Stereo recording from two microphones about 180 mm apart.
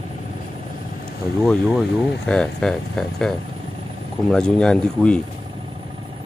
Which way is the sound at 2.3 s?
5° left (ahead or behind).